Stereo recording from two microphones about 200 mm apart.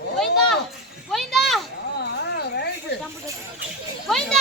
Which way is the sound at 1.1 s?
Centre (ahead or behind).